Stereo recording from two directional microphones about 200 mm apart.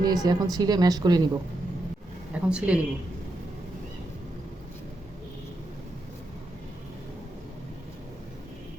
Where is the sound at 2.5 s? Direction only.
5° right (ahead or behind).